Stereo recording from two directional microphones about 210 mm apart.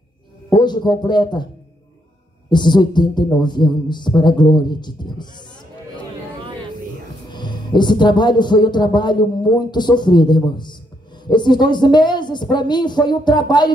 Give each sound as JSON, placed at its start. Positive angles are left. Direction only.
{"t": 0.5, "sound": "speech", "side_deg": 20}
{"t": 2.5, "sound": "speech", "side_deg": 20}
{"t": 7.2, "sound": "speech", "side_deg": 20}